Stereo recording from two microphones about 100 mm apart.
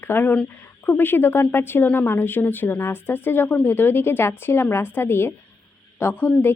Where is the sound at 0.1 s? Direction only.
20° left (ahead or behind).